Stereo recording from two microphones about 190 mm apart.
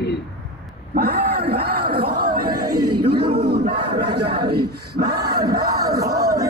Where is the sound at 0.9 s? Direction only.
50° right (ahead or behind).